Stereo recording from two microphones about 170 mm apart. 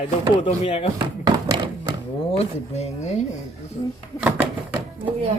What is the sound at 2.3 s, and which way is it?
Speech, 40° left (ahead or behind).